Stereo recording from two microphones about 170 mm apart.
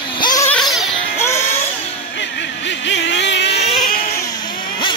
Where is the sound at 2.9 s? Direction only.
90° left.